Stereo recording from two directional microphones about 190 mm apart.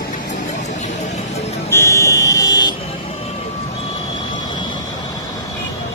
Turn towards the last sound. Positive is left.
turn(degrees=25)  # may be behind; listen again after turning